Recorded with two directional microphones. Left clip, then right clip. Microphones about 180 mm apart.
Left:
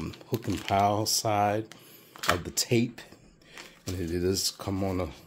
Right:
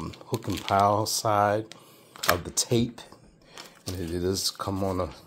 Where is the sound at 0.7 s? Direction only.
5° left (ahead or behind).